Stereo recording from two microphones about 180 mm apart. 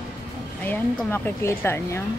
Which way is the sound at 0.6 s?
10° left (ahead or behind).